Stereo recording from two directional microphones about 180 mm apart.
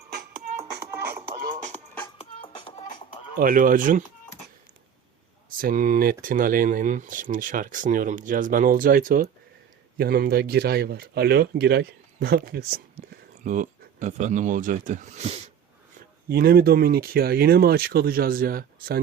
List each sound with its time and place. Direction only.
0.8 s music: 65° right (ahead or behind)
2.1 s music: 30° left (ahead or behind)
3.3 s speech: 50° right (ahead or behind)
5.5 s speech: 50° right (ahead or behind)
13.4 s speech: 45° right (ahead or behind)
16.3 s speech: 60° right (ahead or behind)